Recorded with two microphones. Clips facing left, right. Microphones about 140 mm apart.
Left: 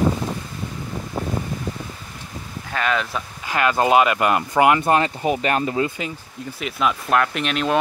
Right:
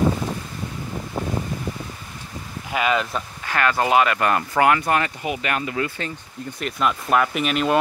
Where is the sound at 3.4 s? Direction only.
15° left (ahead or behind); by 5.8 s 35° left (ahead or behind).